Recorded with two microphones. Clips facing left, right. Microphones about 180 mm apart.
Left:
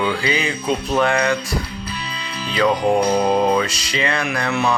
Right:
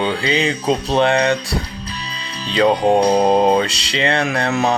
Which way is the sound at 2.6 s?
35° right (ahead or behind).